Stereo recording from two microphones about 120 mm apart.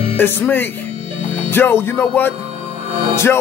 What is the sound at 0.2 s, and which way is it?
Music, 15° left (ahead or behind).